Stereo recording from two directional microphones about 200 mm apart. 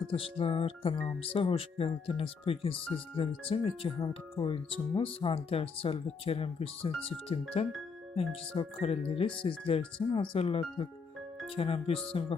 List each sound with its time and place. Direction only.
0.1 s speech: 25° left (ahead or behind)